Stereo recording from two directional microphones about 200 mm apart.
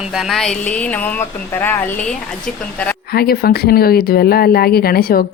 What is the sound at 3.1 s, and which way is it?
Speech, 50° left (ahead or behind).